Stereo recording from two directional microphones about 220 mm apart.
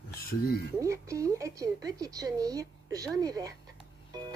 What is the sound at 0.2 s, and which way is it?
Speech, 45° left (ahead or behind).